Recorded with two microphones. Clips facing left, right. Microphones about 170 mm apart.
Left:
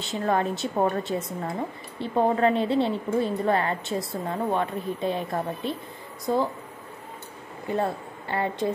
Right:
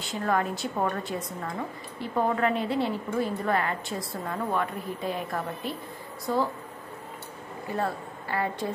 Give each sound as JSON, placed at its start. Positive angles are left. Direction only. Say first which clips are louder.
{"t": 0.0, "sound": "a woman's voice", "louder": "left 2 dB", "side_deg": 25}
{"t": 7.7, "sound": "a woman's voice", "louder": "left 3 dB", "side_deg": 25}